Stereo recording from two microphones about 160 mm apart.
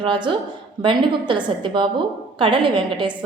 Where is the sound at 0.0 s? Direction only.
30° right (ahead or behind).